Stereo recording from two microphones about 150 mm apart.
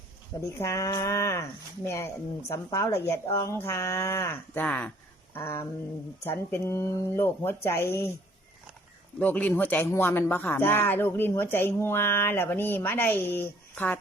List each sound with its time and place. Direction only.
0.4 s speech: 20° left (ahead or behind)
9.1 s speech: 10° left (ahead or behind)